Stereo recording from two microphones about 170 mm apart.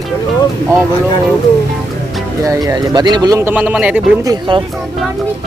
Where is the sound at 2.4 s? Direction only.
20° right (ahead or behind).